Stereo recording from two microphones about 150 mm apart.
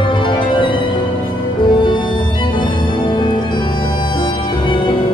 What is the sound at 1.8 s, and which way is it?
Music, 30° left (ahead or behind).